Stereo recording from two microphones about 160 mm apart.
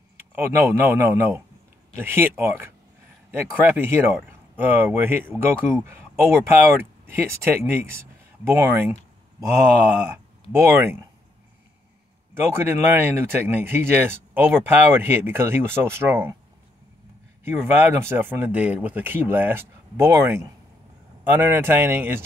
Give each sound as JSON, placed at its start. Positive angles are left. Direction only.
{"t": 0.2, "sound": "speech", "side_deg": -15}
{"t": 10.5, "sound": "speech", "side_deg": -15}
{"t": 12.4, "sound": "speech", "side_deg": -15}
{"t": 17.5, "sound": "speech", "side_deg": -15}